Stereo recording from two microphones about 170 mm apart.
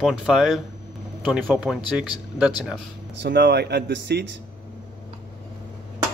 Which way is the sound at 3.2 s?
75° right (ahead or behind).